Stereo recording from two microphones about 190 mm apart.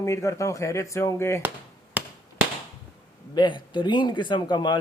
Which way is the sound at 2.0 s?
10° right (ahead or behind).